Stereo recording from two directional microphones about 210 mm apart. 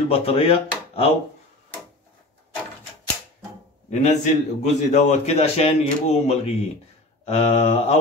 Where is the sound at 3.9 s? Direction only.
30° left (ahead or behind).